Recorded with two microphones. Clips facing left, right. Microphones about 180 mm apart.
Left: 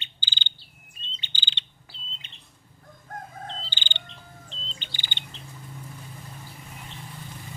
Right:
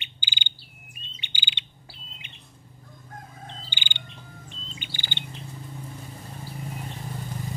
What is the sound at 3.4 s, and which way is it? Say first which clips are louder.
Bird: left 3 dB; 15° right (ahead or behind).